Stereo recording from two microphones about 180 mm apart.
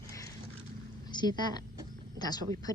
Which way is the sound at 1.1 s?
25° left (ahead or behind).